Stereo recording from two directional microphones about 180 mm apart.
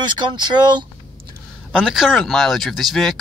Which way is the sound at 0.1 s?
25° right (ahead or behind).